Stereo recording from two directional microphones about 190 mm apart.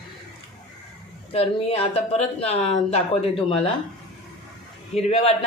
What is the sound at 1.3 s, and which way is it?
Speech, 30° left (ahead or behind).